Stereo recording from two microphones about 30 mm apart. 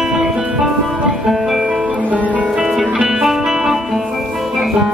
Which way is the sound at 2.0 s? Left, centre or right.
Right.